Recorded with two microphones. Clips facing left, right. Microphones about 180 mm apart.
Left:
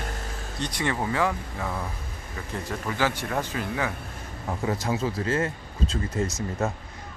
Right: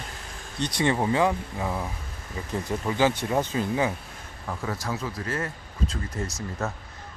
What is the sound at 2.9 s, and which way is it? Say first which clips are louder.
Speech: right 4 dB; 20° right (ahead or behind).